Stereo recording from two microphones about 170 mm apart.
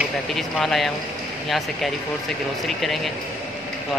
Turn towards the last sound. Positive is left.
turn(degrees=0)  # may be behind; listen again after turning